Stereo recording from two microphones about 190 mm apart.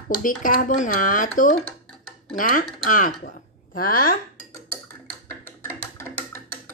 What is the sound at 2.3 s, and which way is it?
Speech, 45° left (ahead or behind).